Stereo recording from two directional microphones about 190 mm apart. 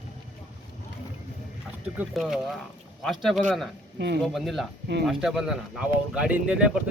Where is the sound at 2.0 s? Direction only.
Centre (ahead or behind).